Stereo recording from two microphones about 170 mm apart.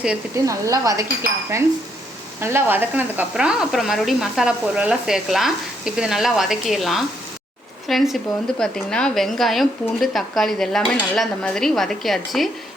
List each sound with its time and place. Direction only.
0.4 s a woman's voice: 20° right (ahead or behind); by 12.5 s centre (ahead or behind)